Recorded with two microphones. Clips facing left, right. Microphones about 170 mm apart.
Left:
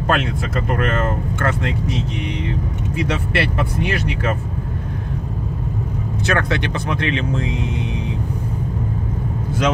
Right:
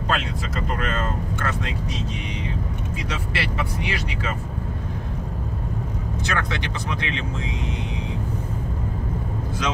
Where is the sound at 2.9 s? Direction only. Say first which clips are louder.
Left 10 dB; 60° left (ahead or behind).